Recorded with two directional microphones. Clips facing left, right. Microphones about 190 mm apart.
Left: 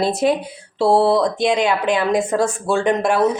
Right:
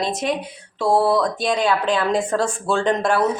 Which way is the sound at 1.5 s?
10° left (ahead or behind).